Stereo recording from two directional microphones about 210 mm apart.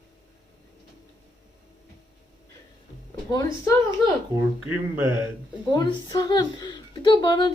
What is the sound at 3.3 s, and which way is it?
Speech, 15° left (ahead or behind).